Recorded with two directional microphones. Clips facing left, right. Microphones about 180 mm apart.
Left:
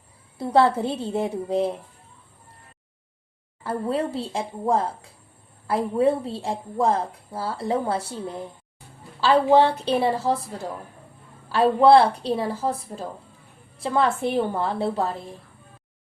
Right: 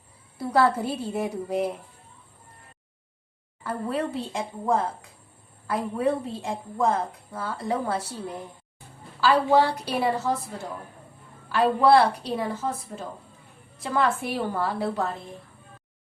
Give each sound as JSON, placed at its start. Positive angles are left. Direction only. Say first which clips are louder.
{"t": 0.3, "sound": "a woman's voice", "louder": "left 3 dB", "side_deg": 25}
{"t": 3.6, "sound": "a woman's voice", "louder": "left 3 dB", "side_deg": 30}
{"t": 11.4, "sound": "a woman's voice", "louder": "left 3 dB", "side_deg": 30}